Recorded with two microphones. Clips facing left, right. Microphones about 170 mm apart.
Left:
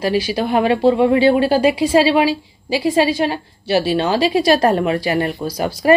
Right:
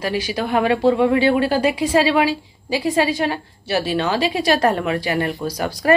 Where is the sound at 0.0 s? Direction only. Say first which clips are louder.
Left 4 dB; 30° left (ahead or behind).